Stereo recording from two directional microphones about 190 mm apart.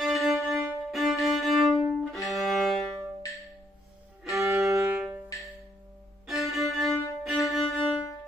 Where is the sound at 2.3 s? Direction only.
Centre (ahead or behind).